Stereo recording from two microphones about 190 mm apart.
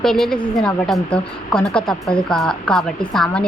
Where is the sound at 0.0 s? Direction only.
Centre (ahead or behind).